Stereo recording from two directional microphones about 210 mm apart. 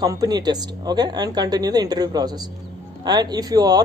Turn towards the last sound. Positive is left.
turn(degrees=-20)  # may be behind; listen again after turning